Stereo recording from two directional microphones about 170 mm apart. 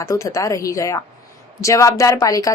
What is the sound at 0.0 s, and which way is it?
A woman's voice, 20° left (ahead or behind).